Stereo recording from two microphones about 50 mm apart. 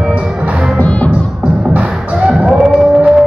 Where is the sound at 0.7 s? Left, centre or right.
Left.